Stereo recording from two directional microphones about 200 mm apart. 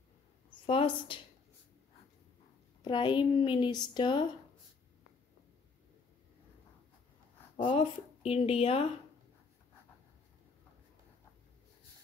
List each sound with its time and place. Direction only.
0.7 s speech: 25° left (ahead or behind)
2.8 s a woman's voice: 25° left (ahead or behind)
7.5 s a woman's voice: 25° left (ahead or behind)